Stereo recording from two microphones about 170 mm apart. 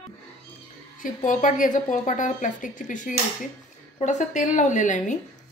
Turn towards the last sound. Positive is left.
turn(degrees=45)  # may be behind; listen again after turning